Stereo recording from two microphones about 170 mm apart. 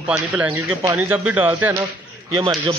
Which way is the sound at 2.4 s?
25° right (ahead or behind).